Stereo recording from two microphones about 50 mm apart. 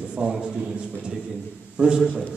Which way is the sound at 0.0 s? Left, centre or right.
Right.